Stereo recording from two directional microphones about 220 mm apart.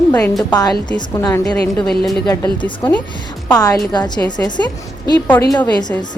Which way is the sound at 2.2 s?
20° left (ahead or behind).